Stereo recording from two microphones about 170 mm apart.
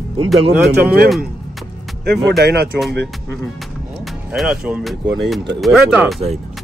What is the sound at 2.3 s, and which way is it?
Speech, 70° right (ahead or behind).